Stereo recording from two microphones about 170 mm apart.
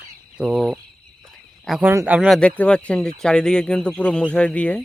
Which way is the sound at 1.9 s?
15° right (ahead or behind).